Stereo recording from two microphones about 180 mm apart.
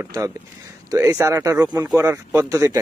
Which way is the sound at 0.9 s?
20° right (ahead or behind).